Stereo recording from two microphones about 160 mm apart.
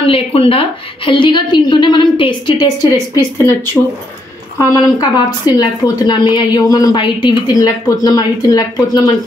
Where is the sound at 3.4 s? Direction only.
15° left (ahead or behind).